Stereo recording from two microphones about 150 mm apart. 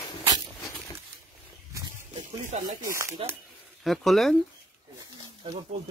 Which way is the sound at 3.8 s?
Centre (ahead or behind).